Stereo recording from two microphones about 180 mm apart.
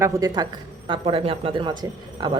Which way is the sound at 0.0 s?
20° right (ahead or behind).